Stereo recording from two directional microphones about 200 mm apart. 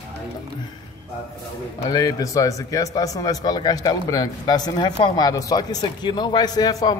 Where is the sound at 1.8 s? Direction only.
20° left (ahead or behind).